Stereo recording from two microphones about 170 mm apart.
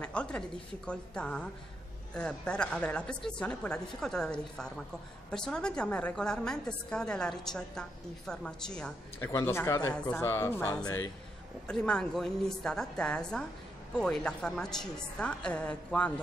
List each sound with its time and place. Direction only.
0.0 s a woman's voice: 5° left (ahead or behind)
9.2 s speech: 15° left (ahead or behind)
11.6 s a woman's voice: 5° left (ahead or behind)